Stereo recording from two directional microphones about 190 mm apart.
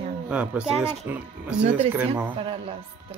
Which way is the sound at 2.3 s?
30° right (ahead or behind).